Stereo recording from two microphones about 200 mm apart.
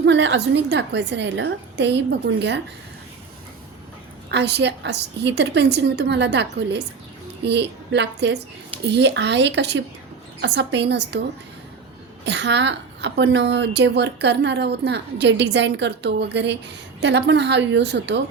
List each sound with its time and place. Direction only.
0.0 s a woman's voice: 65° right (ahead or behind)
4.3 s a woman's voice: 60° right (ahead or behind)
12.2 s a woman's voice: 60° right (ahead or behind)